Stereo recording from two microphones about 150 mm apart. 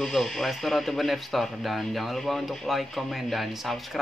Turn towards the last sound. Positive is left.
turn(degrees=0)  # may be behind; listen again after turning